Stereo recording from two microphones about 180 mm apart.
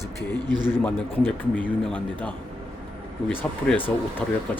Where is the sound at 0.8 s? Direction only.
10° left (ahead or behind).